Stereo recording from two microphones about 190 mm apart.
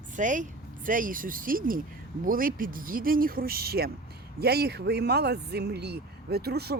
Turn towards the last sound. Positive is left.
turn(degrees=-55)  # may be behind; listen again after turning